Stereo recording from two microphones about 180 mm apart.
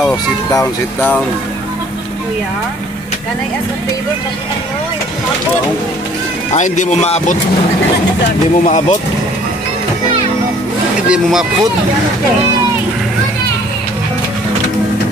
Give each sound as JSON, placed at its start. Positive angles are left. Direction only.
{"t": 0.5, "sound": "speech", "side_deg": 20}
{"t": 6.5, "sound": "speech", "side_deg": 40}
{"t": 8.6, "sound": "speech", "side_deg": 40}
{"t": 11.1, "sound": "speech", "side_deg": -5}